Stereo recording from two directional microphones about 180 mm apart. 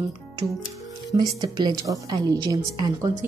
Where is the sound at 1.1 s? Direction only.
20° right (ahead or behind).